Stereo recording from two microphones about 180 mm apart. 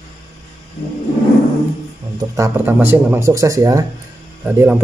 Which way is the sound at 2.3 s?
15° right (ahead or behind).